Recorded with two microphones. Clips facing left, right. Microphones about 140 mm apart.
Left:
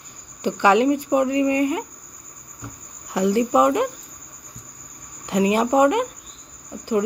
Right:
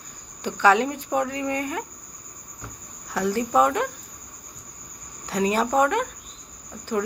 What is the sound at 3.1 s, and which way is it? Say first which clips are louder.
Speech: left 4 dB; 15° left (ahead or behind).